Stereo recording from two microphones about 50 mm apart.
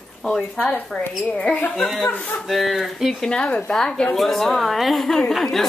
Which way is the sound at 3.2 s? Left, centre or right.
Left.